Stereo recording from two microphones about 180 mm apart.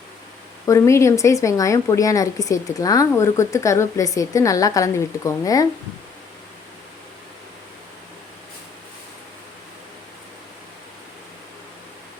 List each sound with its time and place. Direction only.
0.6 s a woman's voice: 15° left (ahead or behind)